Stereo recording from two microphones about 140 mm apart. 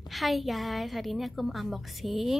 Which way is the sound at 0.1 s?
Centre (ahead or behind).